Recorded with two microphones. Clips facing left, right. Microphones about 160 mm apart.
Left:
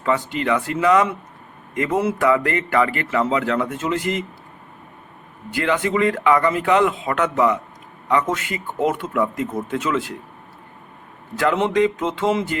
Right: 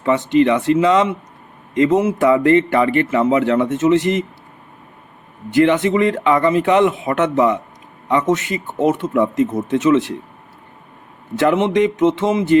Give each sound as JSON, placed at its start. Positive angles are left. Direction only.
{"t": 0.0, "sound": "speech", "side_deg": -20}
{"t": 5.5, "sound": "speech", "side_deg": -25}
{"t": 11.3, "sound": "speech", "side_deg": -20}